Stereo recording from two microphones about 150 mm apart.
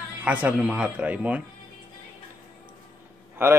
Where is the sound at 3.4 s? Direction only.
15° right (ahead or behind).